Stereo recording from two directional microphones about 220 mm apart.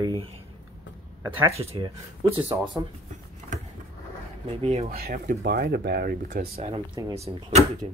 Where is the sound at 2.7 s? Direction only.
10° right (ahead or behind).